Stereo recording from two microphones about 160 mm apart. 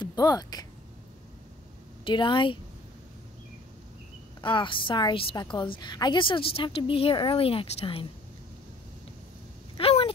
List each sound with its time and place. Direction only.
0.0 s speech: 25° left (ahead or behind)
2.0 s a woman's voice: 30° left (ahead or behind)
4.4 s a woman's voice: 30° left (ahead or behind)
9.8 s a sound: 35° left (ahead or behind)